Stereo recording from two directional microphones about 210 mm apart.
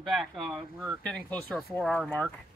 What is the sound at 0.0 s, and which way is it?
Speech, centre (ahead or behind).